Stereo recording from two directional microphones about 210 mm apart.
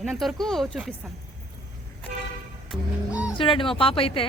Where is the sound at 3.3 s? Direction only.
25° left (ahead or behind).